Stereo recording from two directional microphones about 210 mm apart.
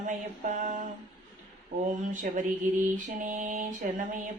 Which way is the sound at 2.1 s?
35° right (ahead or behind).